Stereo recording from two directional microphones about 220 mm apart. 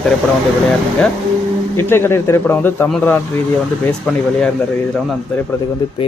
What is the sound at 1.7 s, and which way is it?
A man's voice, 10° left (ahead or behind).